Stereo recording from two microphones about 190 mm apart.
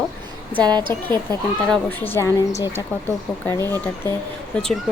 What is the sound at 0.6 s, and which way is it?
Speech, 20° right (ahead or behind).